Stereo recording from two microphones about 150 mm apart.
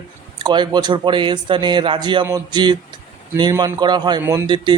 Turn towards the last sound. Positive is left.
turn(degrees=-30)  # may be behind; listen again after turning